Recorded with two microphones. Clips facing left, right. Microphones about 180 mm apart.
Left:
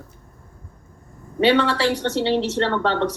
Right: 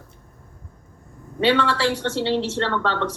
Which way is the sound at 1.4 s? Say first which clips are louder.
Left 2 dB; 15° left (ahead or behind).